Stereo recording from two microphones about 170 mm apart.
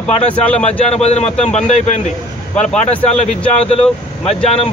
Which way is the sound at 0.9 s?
40° left (ahead or behind).